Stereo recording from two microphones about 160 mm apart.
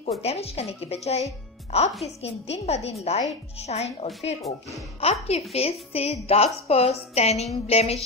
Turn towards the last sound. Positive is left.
turn(degrees=40)  # may be behind; listen again after turning